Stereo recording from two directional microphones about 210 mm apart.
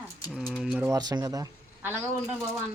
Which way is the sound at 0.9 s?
20° right (ahead or behind).